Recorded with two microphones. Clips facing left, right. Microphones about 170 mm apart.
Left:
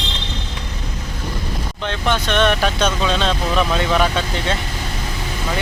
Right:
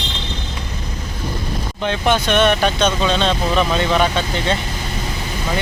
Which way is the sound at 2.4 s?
Centre (ahead or behind).